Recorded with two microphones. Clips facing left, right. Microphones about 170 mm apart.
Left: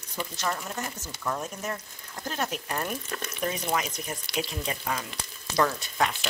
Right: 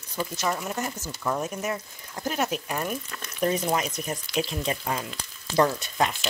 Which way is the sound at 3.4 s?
30° right (ahead or behind).